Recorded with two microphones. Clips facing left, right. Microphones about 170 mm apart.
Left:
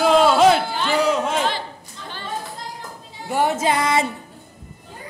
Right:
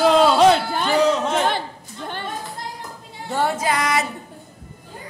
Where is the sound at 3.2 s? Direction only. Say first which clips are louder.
Left 2 dB; 10° left (ahead or behind).